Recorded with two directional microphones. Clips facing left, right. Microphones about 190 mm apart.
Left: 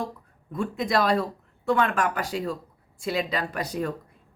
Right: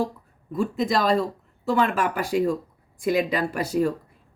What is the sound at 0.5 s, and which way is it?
A woman's voice, centre (ahead or behind).